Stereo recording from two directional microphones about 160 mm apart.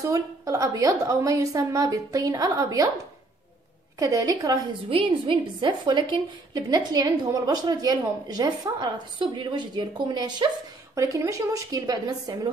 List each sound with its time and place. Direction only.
0.0 s a woman's voice: 20° right (ahead or behind)
4.0 s a woman's voice: 20° right (ahead or behind)
4.8 s a woman's voice: 35° right (ahead or behind)